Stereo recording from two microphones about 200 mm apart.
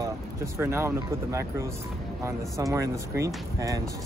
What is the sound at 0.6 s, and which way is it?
Speech, 15° right (ahead or behind).